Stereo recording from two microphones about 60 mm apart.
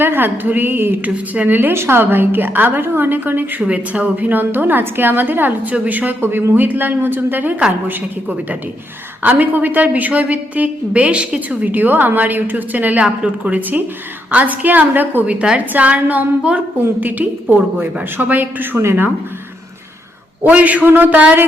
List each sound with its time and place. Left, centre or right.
0.0 s a woman's voice: right
9.2 s a woman's voice: right
11.7 s a woman's voice: right
18.8 s speech: right
20.4 s a woman's voice: right